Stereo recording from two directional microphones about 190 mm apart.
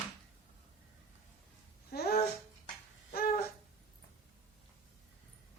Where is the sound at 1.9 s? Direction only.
55° left (ahead or behind).